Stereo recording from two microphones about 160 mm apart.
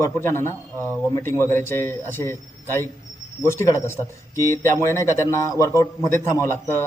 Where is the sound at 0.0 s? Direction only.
15° left (ahead or behind).